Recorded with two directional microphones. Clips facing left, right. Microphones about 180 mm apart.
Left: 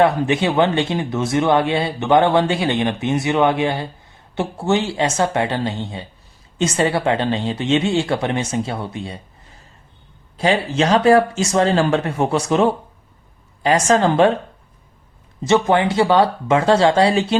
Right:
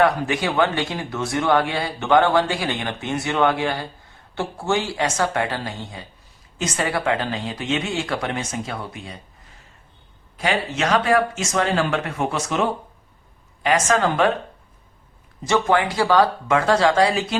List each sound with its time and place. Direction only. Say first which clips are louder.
0.0 s speech: left 4 dB; 25° left (ahead or behind)
10.3 s speech: left 6 dB; 30° left (ahead or behind)
15.4 s speech: left 4 dB; 25° left (ahead or behind)